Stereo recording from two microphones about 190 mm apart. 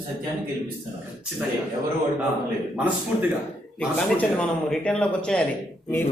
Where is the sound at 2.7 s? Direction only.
10° right (ahead or behind).